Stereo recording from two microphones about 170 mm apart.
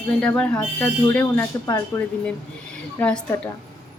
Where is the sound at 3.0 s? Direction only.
10° left (ahead or behind).